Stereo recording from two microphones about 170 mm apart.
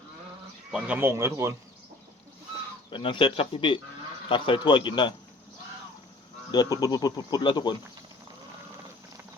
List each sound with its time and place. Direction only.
0.7 s speech: 5° right (ahead or behind)
2.9 s speech: 30° left (ahead or behind)
6.5 s speech: 25° left (ahead or behind)